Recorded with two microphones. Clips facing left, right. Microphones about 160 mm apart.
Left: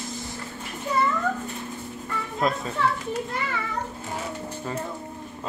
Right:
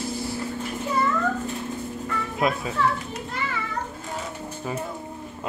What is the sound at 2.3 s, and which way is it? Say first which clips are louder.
Speech: even; 10° right (ahead or behind).